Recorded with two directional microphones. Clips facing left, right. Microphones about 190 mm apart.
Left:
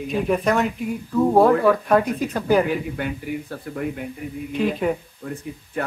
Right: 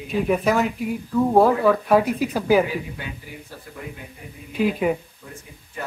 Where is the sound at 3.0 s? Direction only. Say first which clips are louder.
Left 9 dB; 60° left (ahead or behind).